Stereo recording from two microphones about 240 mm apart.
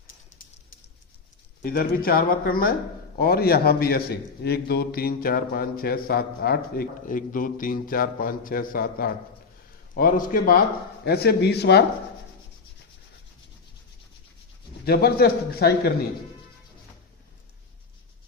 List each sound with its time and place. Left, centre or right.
1.6 s a man's voice: left
14.8 s a man's voice: left